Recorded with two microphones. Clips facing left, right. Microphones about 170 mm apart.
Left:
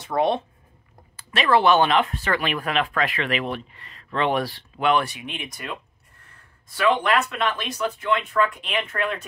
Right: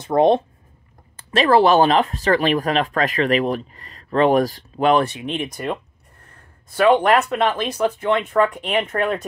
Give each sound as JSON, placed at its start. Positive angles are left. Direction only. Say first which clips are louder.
{"t": 0.1, "sound": "speech", "louder": "right 7 dB", "side_deg": -45}
{"t": 6.8, "sound": "speech", "louder": "right 6 dB", "side_deg": -45}